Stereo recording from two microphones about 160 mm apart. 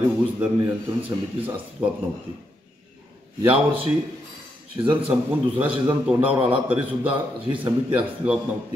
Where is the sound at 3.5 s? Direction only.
35° right (ahead or behind).